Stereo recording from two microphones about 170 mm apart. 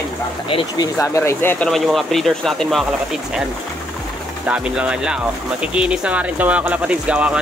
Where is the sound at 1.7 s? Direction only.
Centre (ahead or behind).